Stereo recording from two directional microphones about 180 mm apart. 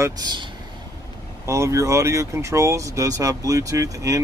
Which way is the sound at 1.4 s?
15° right (ahead or behind).